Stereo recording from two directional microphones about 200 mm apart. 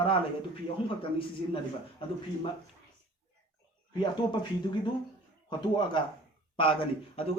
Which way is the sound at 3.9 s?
25° left (ahead or behind).